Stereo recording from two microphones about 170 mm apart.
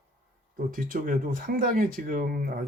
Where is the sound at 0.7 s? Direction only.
55° right (ahead or behind).